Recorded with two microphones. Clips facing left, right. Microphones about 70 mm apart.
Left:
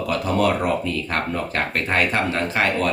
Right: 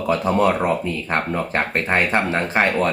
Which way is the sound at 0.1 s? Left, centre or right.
Right.